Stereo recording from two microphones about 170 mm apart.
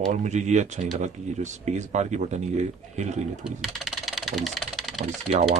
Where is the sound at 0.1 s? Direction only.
45° right (ahead or behind).